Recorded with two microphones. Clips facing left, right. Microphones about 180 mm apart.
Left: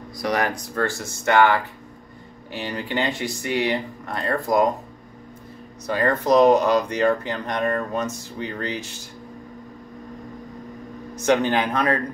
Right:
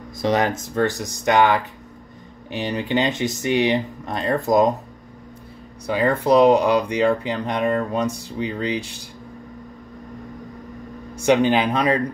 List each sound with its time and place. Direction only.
0.2 s speech: 25° right (ahead or behind)
5.9 s speech: 10° right (ahead or behind)
11.1 s speech: 10° right (ahead or behind)